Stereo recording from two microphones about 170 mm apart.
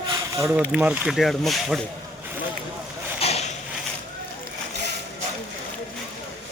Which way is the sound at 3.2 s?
40° left (ahead or behind).